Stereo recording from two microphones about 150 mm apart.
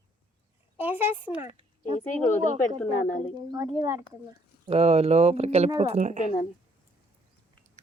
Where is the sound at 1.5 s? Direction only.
35° right (ahead or behind).